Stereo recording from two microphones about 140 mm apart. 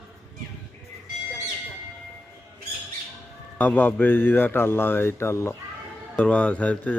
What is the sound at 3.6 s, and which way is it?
Speech, 15° left (ahead or behind).